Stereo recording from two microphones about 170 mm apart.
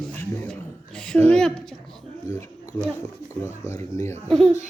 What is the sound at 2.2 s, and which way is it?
Speech, 15° left (ahead or behind).